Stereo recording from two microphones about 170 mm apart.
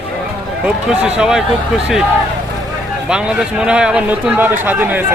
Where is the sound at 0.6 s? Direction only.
5° right (ahead or behind).